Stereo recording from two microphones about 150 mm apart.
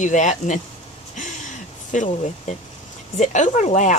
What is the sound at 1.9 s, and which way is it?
Speech, 55° left (ahead or behind).